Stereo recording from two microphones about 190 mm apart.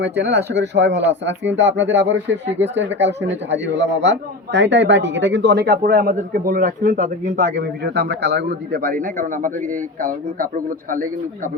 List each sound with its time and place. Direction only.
0.0 s speech: 65° right (ahead or behind); by 7.6 s 45° right (ahead or behind)
7.9 s a man's voice: 60° right (ahead or behind)